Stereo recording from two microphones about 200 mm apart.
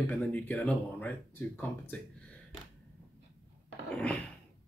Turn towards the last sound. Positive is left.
turn(degrees=5)  # may be behind; listen again after turning